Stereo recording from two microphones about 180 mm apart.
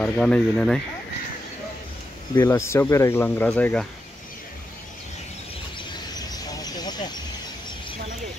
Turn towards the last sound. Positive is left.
turn(degrees=20)  # may be behind; listen again after turning